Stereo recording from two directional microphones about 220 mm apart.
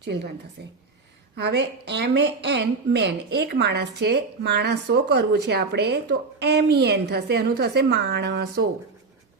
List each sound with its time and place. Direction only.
0.0 s a woman's voice: 50° right (ahead or behind)